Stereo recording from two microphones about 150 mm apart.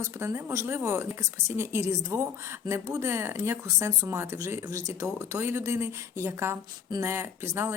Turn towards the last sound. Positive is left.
turn(degrees=-15)  # may be behind; listen again after turning